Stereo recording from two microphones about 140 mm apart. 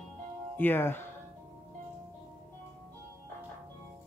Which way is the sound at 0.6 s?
15° left (ahead or behind).